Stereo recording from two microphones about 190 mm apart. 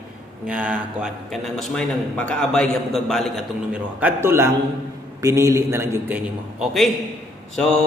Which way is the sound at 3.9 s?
10° right (ahead or behind).